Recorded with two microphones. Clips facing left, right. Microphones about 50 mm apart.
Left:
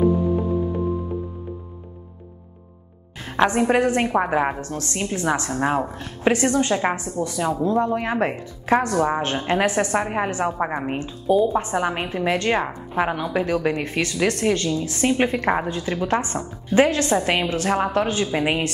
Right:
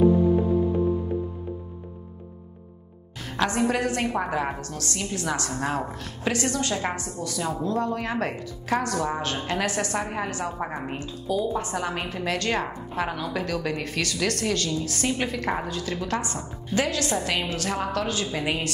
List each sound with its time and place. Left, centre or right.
3.2 s speech: left